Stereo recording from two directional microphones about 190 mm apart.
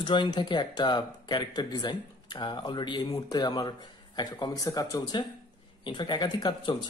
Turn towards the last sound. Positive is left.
turn(degrees=25)  # may be behind; listen again after turning